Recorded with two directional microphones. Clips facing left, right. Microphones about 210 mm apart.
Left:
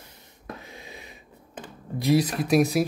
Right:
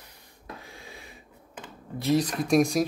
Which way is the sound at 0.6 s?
20° left (ahead or behind).